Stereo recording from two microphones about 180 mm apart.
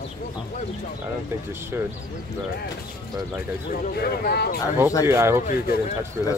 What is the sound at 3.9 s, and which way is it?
Speech, 60° left (ahead or behind).